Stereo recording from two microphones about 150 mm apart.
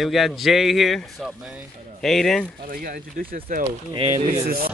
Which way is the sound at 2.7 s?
70° right (ahead or behind).